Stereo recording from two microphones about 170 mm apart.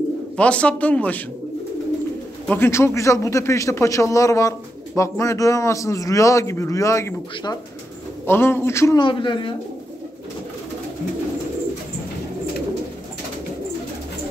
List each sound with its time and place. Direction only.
0.4 s a man's voice: 5° left (ahead or behind)
2.4 s a man's voice: 10° left (ahead or behind)
9.0 s speech: 30° left (ahead or behind)